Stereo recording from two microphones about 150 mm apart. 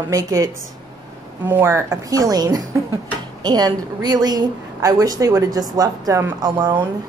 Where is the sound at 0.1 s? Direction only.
25° right (ahead or behind).